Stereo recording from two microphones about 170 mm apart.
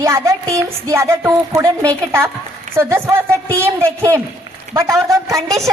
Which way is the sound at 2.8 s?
15° right (ahead or behind).